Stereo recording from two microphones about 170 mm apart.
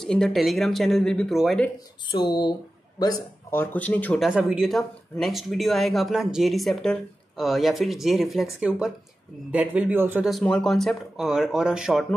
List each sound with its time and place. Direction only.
0.0 s speech: 5° left (ahead or behind)
2.1 s a man's voice: 25° left (ahead or behind); by 4.3 s 10° left (ahead or behind)
4.3 s a man's voice: 5° right (ahead or behind)
10.3 s speech: 5° left (ahead or behind)